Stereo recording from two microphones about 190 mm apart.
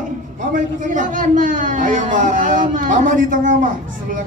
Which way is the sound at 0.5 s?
45° right (ahead or behind).